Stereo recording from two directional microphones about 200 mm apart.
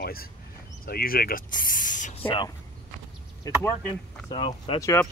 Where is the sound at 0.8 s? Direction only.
50° left (ahead or behind).